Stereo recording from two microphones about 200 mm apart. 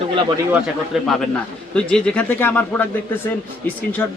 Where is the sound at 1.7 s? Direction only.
5° left (ahead or behind).